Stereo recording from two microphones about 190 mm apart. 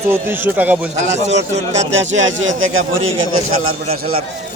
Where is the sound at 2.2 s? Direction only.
85° right.